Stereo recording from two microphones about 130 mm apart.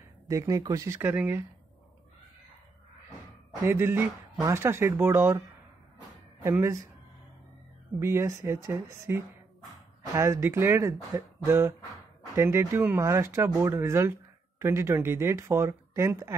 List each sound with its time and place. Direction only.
0.3 s speech: 25° right (ahead or behind)
3.6 s speech: 20° right (ahead or behind)
8.0 s speech: 20° right (ahead or behind)
11.1 s a sound: 20° right (ahead or behind)
12.4 s speech: 20° right (ahead or behind)